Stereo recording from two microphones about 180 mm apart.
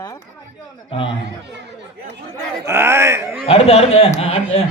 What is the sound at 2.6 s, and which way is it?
Speech, 15° right (ahead or behind).